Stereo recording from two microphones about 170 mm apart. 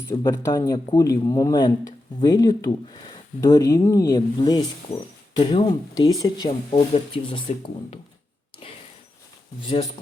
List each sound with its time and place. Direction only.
0.2 s speech: 20° left (ahead or behind)